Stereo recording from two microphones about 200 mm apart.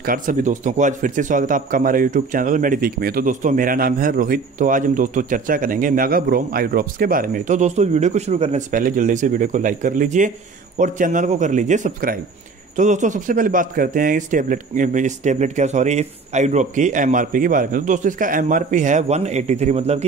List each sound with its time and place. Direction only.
0.0 s speech: 40° right (ahead or behind)